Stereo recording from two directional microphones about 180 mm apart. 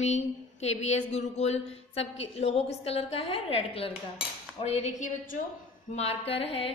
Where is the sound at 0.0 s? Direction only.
40° left (ahead or behind).